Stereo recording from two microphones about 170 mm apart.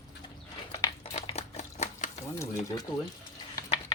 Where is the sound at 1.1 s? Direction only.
40° left (ahead or behind).